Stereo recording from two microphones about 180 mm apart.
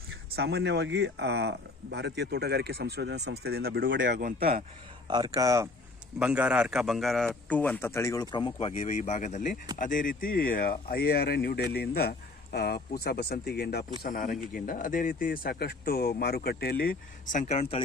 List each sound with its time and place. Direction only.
0.3 s speech: 65° right (ahead or behind)
5.0 s speech: 20° right (ahead or behind)
6.1 s a man's voice: 5° right (ahead or behind); by 13.8 s 60° left (ahead or behind)
14.0 s speech: 45° left (ahead or behind)
17.3 s speech: 40° left (ahead or behind)